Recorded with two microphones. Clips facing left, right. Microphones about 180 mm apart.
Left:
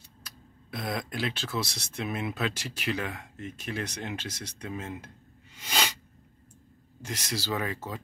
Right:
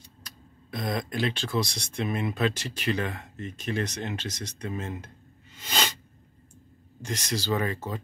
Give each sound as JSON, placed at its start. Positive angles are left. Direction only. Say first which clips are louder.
{"t": 0.2, "sound": "speech", "louder": "even", "side_deg": 5}
{"t": 5.5, "sound": "a sound", "louder": "right 1 dB", "side_deg": 10}
{"t": 7.0, "sound": "speech", "louder": "right 3 dB", "side_deg": 10}